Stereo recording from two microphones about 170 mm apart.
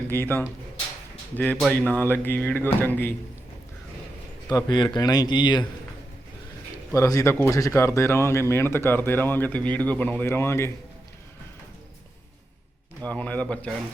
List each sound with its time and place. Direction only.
0.1 s speech: 10° left (ahead or behind)
4.4 s speech: 25° left (ahead or behind)
6.9 s speech: 20° left (ahead or behind)
13.1 s speech: 10° left (ahead or behind)